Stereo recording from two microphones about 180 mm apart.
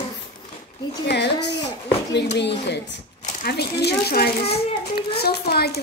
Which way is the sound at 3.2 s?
60° left (ahead or behind).